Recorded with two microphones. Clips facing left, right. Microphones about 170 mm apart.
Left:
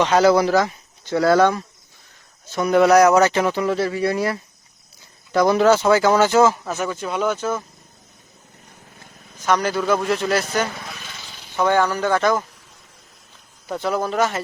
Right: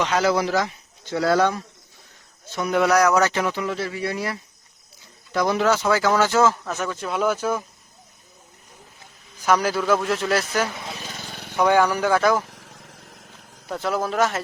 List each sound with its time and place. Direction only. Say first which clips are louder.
0.0 s speech: left 6 dB; 35° left (ahead or behind)
1.1 s speech: left 4 dB; 55° left (ahead or behind)
2.6 s speech: left 5 dB; 40° left (ahead or behind)
2.9 s speech: left 4 dB; 25° left (ahead or behind); by 7.6 s 10° right (ahead or behind)
9.5 s a man's voice: even; 5° right (ahead or behind)
11.0 s vehicle: right 4 dB; 45° right (ahead or behind)
11.5 s speech: even; 10° right (ahead or behind)
12.5 s vehicle: right 6 dB; 85° right
13.7 s a man's voice: left 2 dB; centre (ahead or behind)